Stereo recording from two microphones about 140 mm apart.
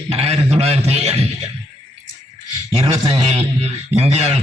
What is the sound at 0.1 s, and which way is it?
A man's voice, 50° right (ahead or behind).